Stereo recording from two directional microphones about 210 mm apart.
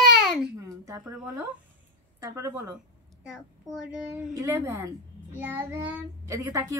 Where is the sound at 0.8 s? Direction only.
15° right (ahead or behind).